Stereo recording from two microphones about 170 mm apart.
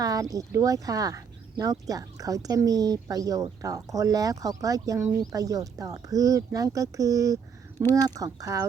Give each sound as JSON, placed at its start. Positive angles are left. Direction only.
{"t": 0.0, "sound": "speech", "side_deg": -20}